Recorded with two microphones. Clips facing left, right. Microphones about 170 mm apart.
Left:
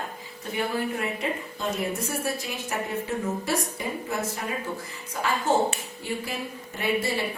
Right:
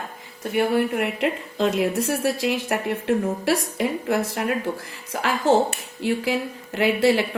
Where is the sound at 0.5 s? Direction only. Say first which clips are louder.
Right 7 dB; 75° right (ahead or behind).